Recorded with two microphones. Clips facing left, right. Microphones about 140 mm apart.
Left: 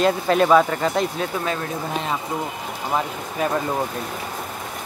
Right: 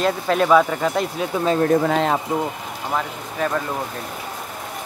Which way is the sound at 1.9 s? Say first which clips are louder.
Right 6 dB; 90° right.